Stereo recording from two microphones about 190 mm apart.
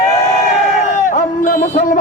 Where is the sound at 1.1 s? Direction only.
40° left (ahead or behind).